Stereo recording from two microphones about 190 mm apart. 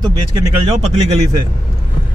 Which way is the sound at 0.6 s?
35° right (ahead or behind).